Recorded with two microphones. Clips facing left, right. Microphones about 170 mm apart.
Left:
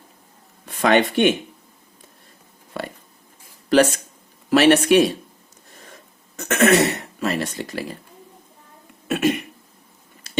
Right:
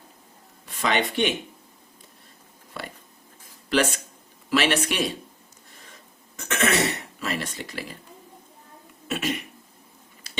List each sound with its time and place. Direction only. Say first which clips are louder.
0.6 s speech: left 8 dB; 50° left (ahead or behind)
3.7 s speech: left 7 dB; 45° left (ahead or behind)
6.3 s throat clearing: left 8 dB; 45° left (ahead or behind)
7.2 s speech: left 8 dB; 40° left (ahead or behind)
9.0 s cough: left 9 dB; 55° left (ahead or behind)